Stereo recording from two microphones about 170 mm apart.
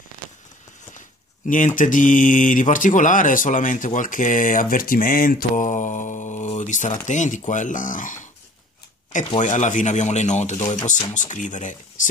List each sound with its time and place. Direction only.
0.9 s speech: 50° left (ahead or behind)
9.4 s speech: 45° left (ahead or behind)